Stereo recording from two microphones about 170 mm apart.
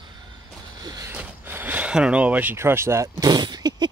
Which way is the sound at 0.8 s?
20° right (ahead or behind).